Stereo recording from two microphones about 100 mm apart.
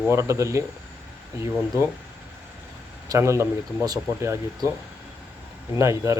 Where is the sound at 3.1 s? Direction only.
30° right (ahead or behind).